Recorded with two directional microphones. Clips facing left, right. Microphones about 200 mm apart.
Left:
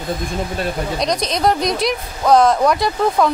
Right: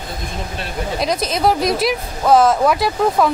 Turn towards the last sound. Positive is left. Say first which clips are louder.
# even
turn(degrees=-5)  # may be behind; listen again after turning